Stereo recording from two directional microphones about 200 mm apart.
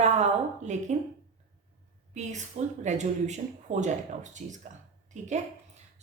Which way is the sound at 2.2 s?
35° right (ahead or behind).